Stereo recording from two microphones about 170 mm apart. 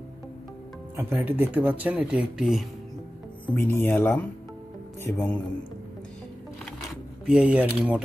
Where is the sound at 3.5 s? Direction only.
10° left (ahead or behind).